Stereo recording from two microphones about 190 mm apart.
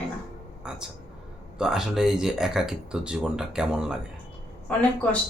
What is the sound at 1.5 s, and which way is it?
Speech, 5° right (ahead or behind).